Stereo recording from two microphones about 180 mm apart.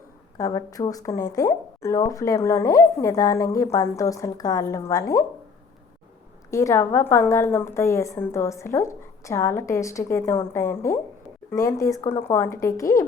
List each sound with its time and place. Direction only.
0.3 s a woman's voice: 20° left (ahead or behind)
6.5 s a woman's voice: 15° left (ahead or behind)